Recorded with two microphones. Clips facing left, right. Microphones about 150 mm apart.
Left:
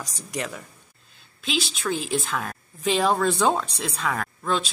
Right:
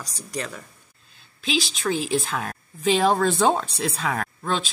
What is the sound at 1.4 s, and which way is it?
Speech, centre (ahead or behind).